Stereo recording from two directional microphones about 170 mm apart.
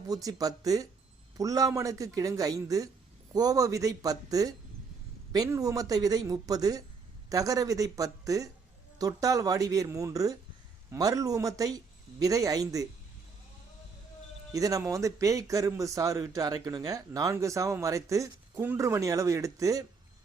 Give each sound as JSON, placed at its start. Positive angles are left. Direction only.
{"t": 0.1, "sound": "speech", "side_deg": -20}
{"t": 14.5, "sound": "speech", "side_deg": -20}